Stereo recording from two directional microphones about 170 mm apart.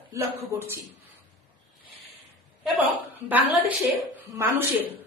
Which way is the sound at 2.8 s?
10° right (ahead or behind).